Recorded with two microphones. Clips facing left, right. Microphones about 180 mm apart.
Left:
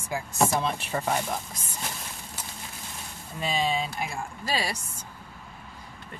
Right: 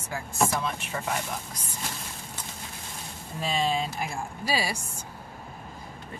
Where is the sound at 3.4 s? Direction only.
Centre (ahead or behind).